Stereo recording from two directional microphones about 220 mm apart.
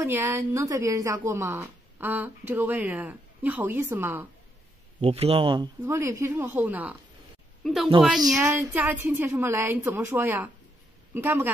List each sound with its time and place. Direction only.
0.0 s a woman's voice: 10° right (ahead or behind)
5.0 s a woman's voice: 25° right (ahead or behind); by 11.5 s 10° right (ahead or behind)